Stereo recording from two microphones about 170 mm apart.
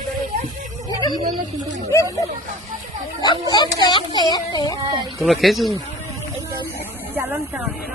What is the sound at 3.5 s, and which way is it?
Speech, 25° left (ahead or behind).